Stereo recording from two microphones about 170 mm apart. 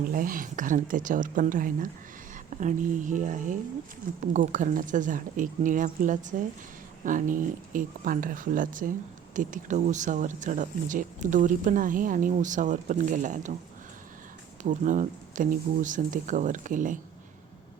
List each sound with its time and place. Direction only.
0.1 s speech: 55° right (ahead or behind)
14.6 s speech: 50° right (ahead or behind)